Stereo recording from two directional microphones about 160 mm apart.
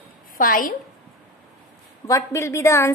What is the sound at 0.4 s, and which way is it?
Speech, 60° left (ahead or behind).